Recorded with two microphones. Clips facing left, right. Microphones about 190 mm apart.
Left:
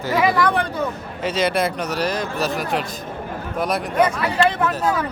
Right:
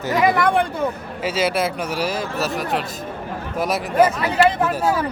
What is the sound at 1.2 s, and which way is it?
A man's voice, 5° right (ahead or behind).